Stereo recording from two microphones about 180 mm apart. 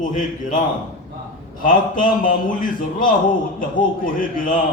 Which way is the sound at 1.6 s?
50° left (ahead or behind).